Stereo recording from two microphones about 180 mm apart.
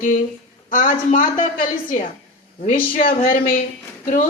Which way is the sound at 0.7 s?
50° left (ahead or behind).